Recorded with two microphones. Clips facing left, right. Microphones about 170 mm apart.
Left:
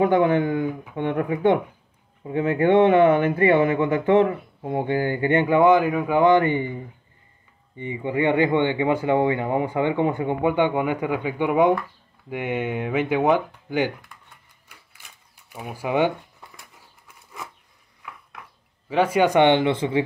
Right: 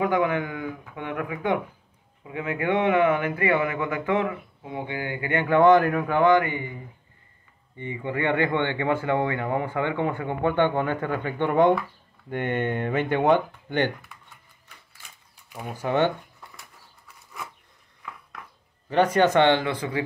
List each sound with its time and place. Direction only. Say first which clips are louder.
0.0 s speech: left 5 dB; 30° left (ahead or behind)
5.3 s speech: left 3 dB; 20° left (ahead or behind)
5.6 s speech: right 2 dB; 5° left (ahead or behind)
6.1 s speech: left 3 dB; 20° left (ahead or behind)
7.7 s speech: left 4 dB; 15° left (ahead or behind)
15.5 s speech: left 1 dB; 5° left (ahead or behind)
18.9 s speech: left 1 dB; 5° left (ahead or behind); by 20.0 s 25° left (ahead or behind)